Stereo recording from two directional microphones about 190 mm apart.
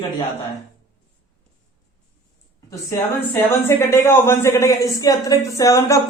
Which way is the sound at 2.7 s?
15° left (ahead or behind).